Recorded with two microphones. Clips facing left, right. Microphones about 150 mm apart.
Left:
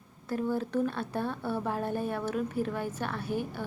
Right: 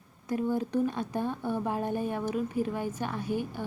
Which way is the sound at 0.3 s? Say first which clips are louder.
Right 1 dB; 15° right (ahead or behind).